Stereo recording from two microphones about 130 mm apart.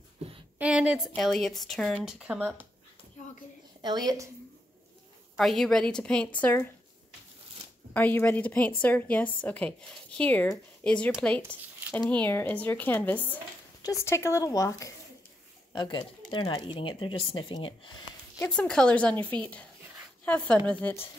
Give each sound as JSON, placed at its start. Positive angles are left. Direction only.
{"t": 0.6, "sound": "a woman's voice", "side_deg": -10}
{"t": 3.8, "sound": "a woman's voice", "side_deg": -30}
{"t": 5.3, "sound": "a woman's voice", "side_deg": 0}
{"t": 7.9, "sound": "a woman's voice", "side_deg": 15}
{"t": 15.7, "sound": "speech", "side_deg": 35}
{"t": 18.4, "sound": "a woman's voice", "side_deg": 5}